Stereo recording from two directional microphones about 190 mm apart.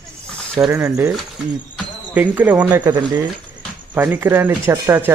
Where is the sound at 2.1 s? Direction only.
10° right (ahead or behind).